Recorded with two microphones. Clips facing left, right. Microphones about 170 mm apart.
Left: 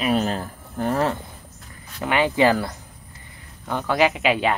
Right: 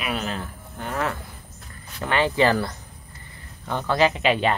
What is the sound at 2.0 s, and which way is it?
Speech, 15° left (ahead or behind).